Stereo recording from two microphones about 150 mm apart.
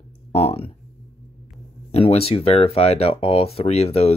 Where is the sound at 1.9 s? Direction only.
45° left (ahead or behind).